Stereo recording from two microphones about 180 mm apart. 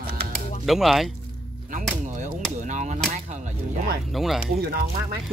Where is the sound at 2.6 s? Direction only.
40° right (ahead or behind).